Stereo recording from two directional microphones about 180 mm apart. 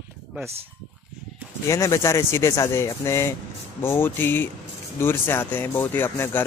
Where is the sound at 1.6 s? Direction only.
15° left (ahead or behind).